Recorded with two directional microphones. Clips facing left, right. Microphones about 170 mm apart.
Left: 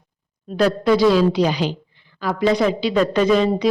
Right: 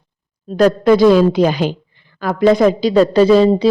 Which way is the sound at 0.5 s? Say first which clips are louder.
Right 5 dB; 50° right (ahead or behind).